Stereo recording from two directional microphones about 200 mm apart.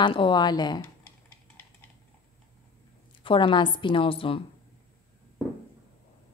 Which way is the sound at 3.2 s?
25° left (ahead or behind).